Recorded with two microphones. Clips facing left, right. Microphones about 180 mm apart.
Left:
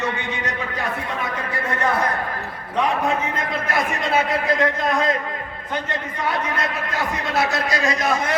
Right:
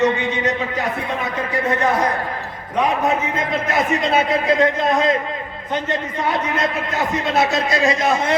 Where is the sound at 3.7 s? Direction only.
20° right (ahead or behind).